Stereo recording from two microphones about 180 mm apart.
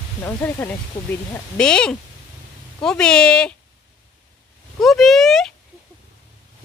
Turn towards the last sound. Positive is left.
turn(degrees=0)  # may be behind; listen again after turning